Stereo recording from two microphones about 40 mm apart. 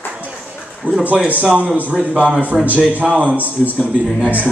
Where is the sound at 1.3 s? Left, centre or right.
Right.